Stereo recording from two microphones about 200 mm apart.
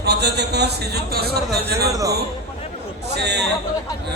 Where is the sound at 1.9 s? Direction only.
15° right (ahead or behind).